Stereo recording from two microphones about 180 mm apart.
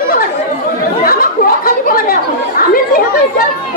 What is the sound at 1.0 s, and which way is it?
Chatter, 55° left (ahead or behind).